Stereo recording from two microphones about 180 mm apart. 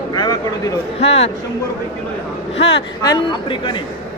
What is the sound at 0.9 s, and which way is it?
Speech, 35° left (ahead or behind).